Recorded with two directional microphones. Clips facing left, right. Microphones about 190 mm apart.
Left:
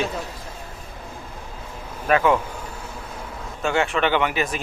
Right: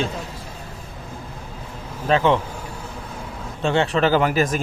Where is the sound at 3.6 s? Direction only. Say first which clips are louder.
Right 3 dB; 30° right (ahead or behind).